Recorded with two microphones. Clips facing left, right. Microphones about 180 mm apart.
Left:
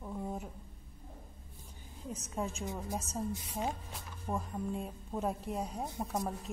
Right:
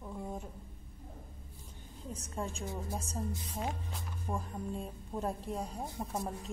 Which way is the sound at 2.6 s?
15° left (ahead or behind).